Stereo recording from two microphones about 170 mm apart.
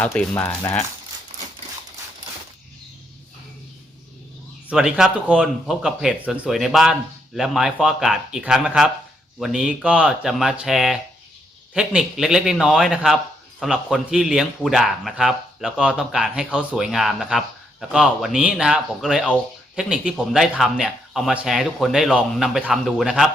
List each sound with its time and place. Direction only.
0.0 s speech: 5° left (ahead or behind)
0.4 s speech: 15° left (ahead or behind)
4.7 s speech: 5° right (ahead or behind)